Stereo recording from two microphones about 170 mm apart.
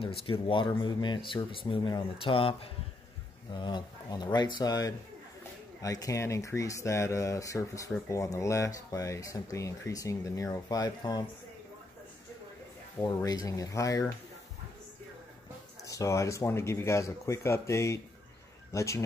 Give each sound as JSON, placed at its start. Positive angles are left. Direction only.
{"t": 0.3, "sound": "speech", "side_deg": 30}
{"t": 13.0, "sound": "speech", "side_deg": 25}
{"t": 15.8, "sound": "speech", "side_deg": 20}